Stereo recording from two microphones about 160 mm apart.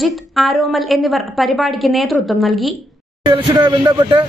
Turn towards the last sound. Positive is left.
turn(degrees=-30)  # may be behind; listen again after turning